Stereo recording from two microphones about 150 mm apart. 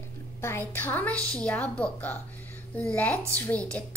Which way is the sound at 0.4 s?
15° left (ahead or behind).